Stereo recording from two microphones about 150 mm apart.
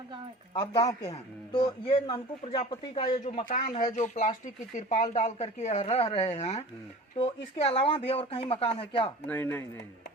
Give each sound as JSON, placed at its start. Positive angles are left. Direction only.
{"t": 0.5, "sound": "a man's voice", "side_deg": 25}
{"t": 3.8, "sound": "speech", "side_deg": 55}
{"t": 9.2, "sound": "speech", "side_deg": 10}